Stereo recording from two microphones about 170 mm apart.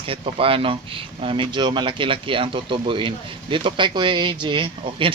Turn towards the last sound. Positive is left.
turn(degrees=-30)  # may be behind; listen again after turning